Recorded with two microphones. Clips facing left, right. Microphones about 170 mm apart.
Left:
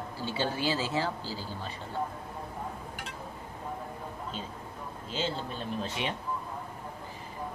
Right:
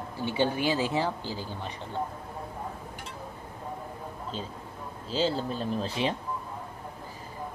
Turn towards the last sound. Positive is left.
turn(degrees=-35)  # may be behind; listen again after turning